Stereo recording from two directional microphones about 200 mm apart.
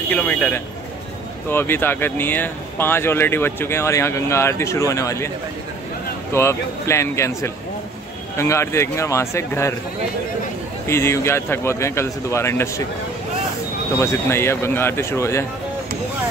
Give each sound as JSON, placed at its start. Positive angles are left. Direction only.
{"t": 0.1, "sound": "speech", "side_deg": 10}
{"t": 6.3, "sound": "speech", "side_deg": 15}
{"t": 10.9, "sound": "speech", "side_deg": 15}
{"t": 13.9, "sound": "speech", "side_deg": 15}